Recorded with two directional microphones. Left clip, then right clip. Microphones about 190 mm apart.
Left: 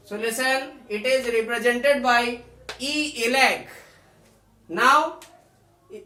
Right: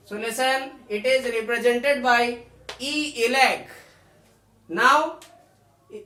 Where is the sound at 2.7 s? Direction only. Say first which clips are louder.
Right 1 dB; 5° right (ahead or behind).